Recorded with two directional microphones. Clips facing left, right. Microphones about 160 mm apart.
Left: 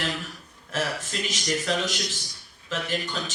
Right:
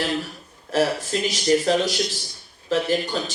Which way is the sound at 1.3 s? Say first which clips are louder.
Right 8 dB; 35° right (ahead or behind).